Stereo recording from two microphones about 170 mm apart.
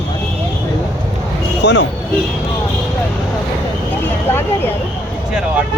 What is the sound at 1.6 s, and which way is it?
Speech, 90° left.